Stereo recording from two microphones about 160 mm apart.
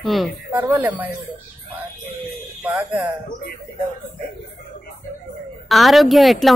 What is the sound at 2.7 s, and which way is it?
Speech, 10° right (ahead or behind).